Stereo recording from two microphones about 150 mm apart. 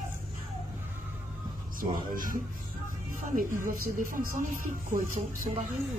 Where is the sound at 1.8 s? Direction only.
65° right (ahead or behind).